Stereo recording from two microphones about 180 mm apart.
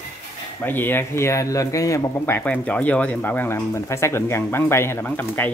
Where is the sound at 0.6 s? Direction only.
10° left (ahead or behind).